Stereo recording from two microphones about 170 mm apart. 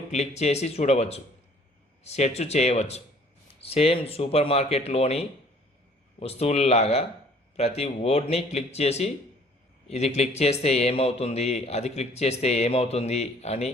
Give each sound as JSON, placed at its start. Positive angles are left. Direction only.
{"t": 0.1, "sound": "a man's voice", "side_deg": 40}
{"t": 10.2, "sound": "a man's voice", "side_deg": 40}